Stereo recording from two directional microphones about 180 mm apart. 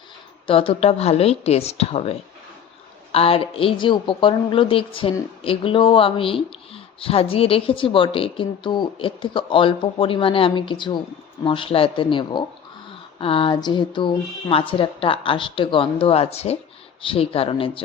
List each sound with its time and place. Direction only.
0.4 s a woman's voice: 30° left (ahead or behind)